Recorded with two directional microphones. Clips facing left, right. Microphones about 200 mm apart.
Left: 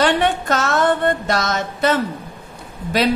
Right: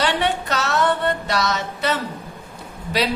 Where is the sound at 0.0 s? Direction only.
50° left (ahead or behind).